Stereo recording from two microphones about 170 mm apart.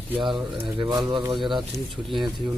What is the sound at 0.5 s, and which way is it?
Speech, 25° right (ahead or behind).